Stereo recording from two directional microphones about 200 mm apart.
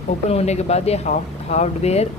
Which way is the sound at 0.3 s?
30° left (ahead or behind).